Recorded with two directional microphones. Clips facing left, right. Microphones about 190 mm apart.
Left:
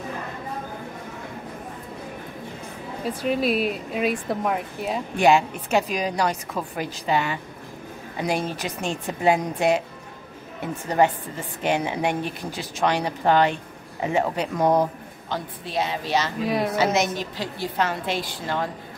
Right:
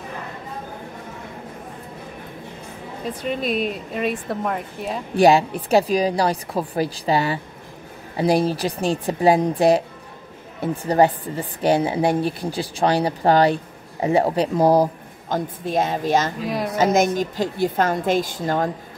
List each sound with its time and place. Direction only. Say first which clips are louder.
3.2 s a woman's voice: left 1 dB; 5° left (ahead or behind)
5.1 s a woman's voice: right 4 dB; 35° right (ahead or behind)
16.4 s a woman's voice: left 1 dB; centre (ahead or behind)
16.7 s a woman's voice: right 4 dB; 45° right (ahead or behind)